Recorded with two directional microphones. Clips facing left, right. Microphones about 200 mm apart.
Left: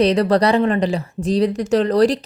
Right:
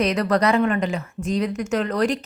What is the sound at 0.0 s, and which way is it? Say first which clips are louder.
Speech: left 5 dB; 30° left (ahead or behind).